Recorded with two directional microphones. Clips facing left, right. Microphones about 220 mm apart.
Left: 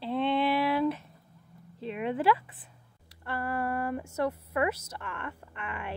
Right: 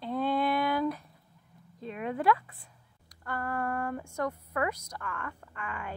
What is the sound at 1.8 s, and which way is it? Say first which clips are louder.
Speech: left 3 dB; 25° left (ahead or behind).